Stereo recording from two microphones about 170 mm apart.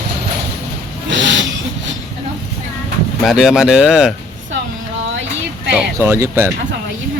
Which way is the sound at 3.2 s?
5° right (ahead or behind).